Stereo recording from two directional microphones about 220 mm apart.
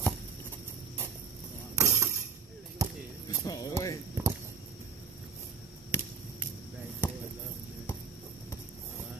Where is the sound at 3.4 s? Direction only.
15° left (ahead or behind).